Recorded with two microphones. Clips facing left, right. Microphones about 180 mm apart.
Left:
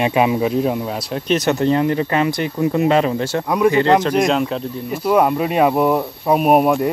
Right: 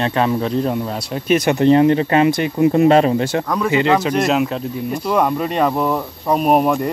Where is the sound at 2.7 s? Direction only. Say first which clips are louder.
Right 3 dB; 40° right (ahead or behind).